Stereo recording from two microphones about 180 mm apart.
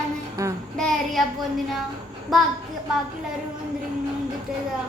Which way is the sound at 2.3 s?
Centre (ahead or behind).